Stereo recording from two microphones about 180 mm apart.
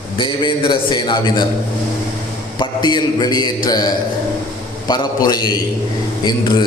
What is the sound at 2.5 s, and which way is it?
A man's voice, 25° left (ahead or behind).